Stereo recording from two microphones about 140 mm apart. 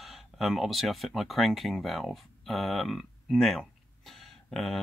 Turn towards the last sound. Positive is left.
turn(degrees=0)  # may be behind; listen again after turning